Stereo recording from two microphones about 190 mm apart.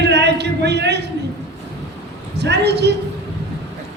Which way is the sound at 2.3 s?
60° right (ahead or behind).